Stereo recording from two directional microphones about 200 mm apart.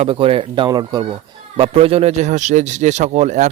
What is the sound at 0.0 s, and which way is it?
A man's voice, 25° right (ahead or behind).